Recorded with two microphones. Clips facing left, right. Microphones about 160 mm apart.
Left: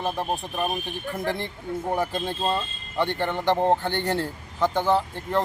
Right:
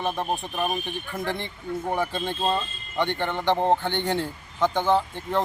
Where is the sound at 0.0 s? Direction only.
5° left (ahead or behind).